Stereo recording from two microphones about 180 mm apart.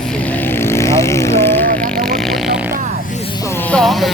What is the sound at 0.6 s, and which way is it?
Speech, 15° left (ahead or behind).